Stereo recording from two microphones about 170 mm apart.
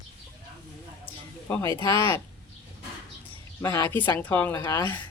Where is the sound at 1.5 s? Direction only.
15° left (ahead or behind).